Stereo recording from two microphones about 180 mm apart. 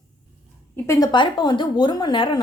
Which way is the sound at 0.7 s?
20° left (ahead or behind).